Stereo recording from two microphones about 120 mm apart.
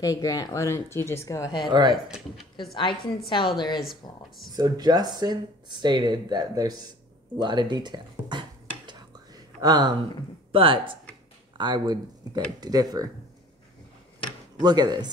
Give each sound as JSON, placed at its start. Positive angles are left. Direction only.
{"t": 0.0, "sound": "speech", "side_deg": 30}
{"t": 1.7, "sound": "speech", "side_deg": -35}
{"t": 2.0, "sound": "speech", "side_deg": -5}
{"t": 2.7, "sound": "a woman's voice", "side_deg": 45}
{"t": 4.6, "sound": "speech", "side_deg": -35}
{"t": 10.5, "sound": "speech", "side_deg": -45}
{"t": 14.6, "sound": "speech", "side_deg": -35}